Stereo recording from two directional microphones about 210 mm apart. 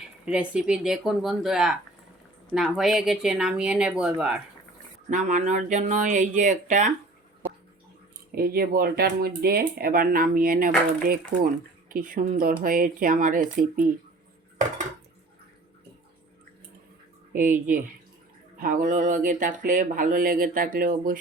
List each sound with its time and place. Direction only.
0.3 s speech: 5° right (ahead or behind)
5.0 s speech: 35° right (ahead or behind)
8.4 s speech: 45° right (ahead or behind)
17.3 s speech: 40° right (ahead or behind)